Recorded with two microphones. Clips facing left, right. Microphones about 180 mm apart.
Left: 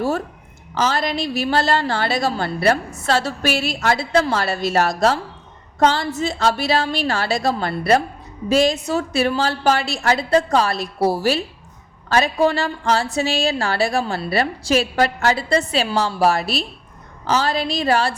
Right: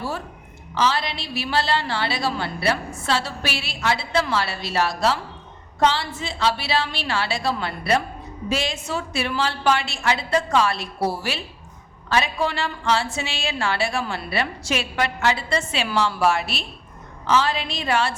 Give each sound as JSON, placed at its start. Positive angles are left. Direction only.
{"t": 0.7, "sound": "a woman's voice", "side_deg": 45}